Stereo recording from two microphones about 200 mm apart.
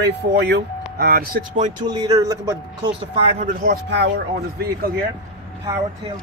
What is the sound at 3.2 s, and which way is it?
A man's voice, 35° right (ahead or behind).